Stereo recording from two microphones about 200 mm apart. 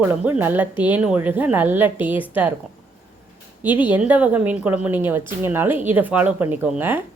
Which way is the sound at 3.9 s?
5° right (ahead or behind).